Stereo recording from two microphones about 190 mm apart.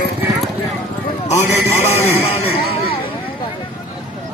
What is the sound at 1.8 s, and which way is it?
Speech, 35° left (ahead or behind).